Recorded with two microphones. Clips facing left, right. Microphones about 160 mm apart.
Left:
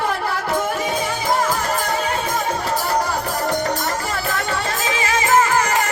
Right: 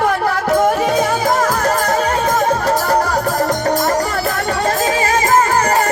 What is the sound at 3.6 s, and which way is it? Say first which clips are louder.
Music: right 7 dB; 45° right (ahead or behind).